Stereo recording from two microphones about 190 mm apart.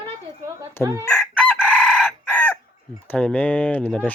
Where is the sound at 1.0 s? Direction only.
5° left (ahead or behind).